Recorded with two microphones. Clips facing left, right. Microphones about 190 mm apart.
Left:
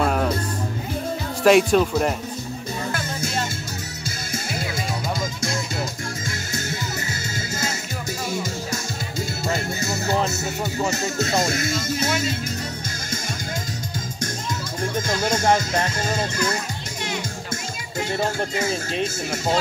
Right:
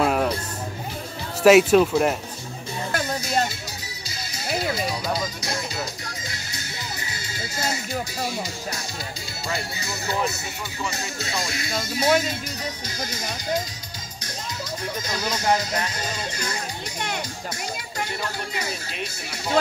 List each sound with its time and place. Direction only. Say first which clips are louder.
0.0 s music: even; 5° right (ahead or behind)
1.4 s speech: right 2 dB; 5° right (ahead or behind)
5.1 s music: left 1 dB; 50° left (ahead or behind)
8.3 s music: left 4 dB; 45° left (ahead or behind)
14.8 s speech: left 8 dB; 50° left (ahead or behind)
18.2 s speech: left 7 dB; 45° left (ahead or behind)